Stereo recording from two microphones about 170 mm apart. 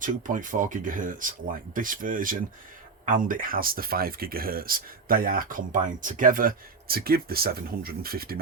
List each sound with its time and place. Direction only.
0.0 s speech: 50° right (ahead or behind)